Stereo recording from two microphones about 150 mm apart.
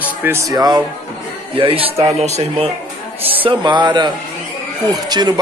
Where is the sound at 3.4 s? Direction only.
35° right (ahead or behind).